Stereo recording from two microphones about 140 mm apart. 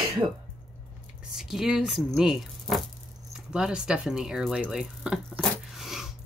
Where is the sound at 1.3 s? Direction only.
Centre (ahead or behind).